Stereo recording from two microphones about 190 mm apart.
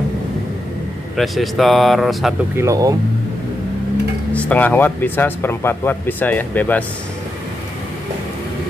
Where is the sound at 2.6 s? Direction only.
15° right (ahead or behind).